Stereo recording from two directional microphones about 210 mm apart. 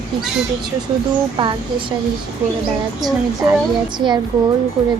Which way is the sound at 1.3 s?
25° right (ahead or behind).